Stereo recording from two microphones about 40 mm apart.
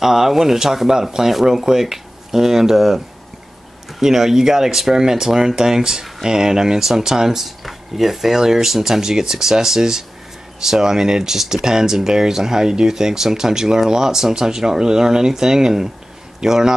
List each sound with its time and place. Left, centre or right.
0.0 s speech: centre
4.0 s speech: centre